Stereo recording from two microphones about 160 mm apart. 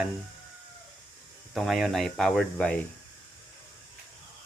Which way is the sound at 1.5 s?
Centre (ahead or behind).